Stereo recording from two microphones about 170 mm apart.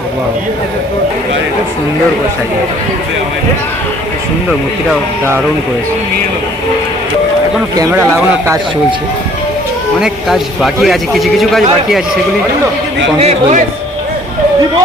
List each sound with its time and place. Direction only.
7.8 s speech: 20° right (ahead or behind)
10.0 s a man's voice: centre (ahead or behind)
13.1 s speech: 40° right (ahead or behind)